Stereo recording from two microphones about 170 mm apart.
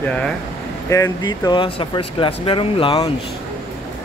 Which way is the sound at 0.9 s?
20° left (ahead or behind).